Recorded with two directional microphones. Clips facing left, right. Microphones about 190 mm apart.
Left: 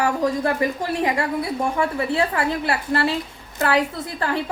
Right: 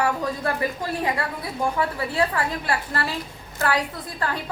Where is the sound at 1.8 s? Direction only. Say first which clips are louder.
Left 3 dB; 25° left (ahead or behind).